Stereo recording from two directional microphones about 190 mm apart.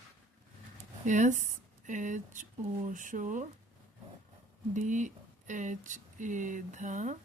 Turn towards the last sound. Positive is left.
turn(degrees=-40)  # may be behind; listen again after turning